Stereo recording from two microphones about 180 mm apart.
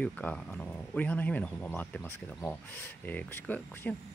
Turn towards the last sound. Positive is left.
turn(degrees=10)  # may be behind; listen again after turning